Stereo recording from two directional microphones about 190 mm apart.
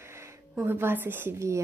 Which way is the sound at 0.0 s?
15° right (ahead or behind).